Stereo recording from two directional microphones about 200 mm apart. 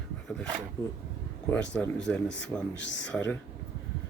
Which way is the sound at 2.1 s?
5° left (ahead or behind).